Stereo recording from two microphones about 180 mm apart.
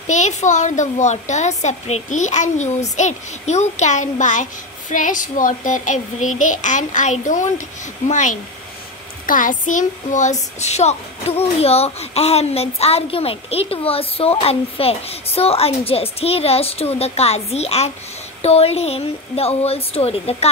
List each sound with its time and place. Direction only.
0.0 s a woman's voice: 40° left (ahead or behind)